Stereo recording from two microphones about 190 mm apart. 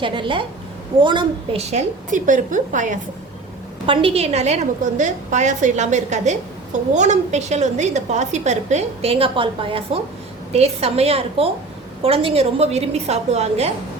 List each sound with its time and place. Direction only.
0.0 s a woman's voice: 25° right (ahead or behind); by 3.0 s 40° right (ahead or behind)
3.8 s a woman's voice: 30° right (ahead or behind)